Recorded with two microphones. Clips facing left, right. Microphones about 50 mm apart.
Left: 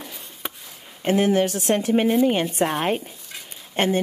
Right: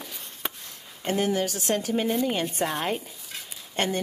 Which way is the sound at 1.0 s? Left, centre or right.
Left.